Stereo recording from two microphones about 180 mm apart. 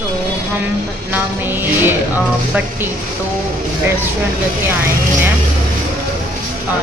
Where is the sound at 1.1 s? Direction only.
10° right (ahead or behind).